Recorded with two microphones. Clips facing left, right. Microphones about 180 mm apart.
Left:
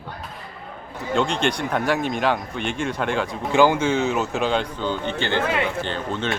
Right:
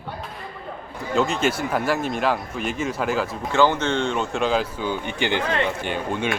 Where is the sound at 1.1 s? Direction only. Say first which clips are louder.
Even; 5° right (ahead or behind).